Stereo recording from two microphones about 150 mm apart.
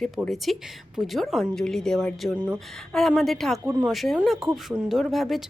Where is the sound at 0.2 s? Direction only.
Centre (ahead or behind).